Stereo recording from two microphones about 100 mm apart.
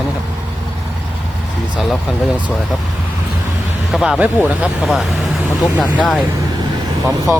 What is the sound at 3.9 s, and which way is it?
Speech, 5° right (ahead or behind).